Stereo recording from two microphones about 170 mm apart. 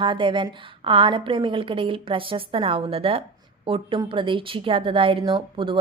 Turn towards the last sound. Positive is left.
turn(degrees=-30)  # may be behind; listen again after turning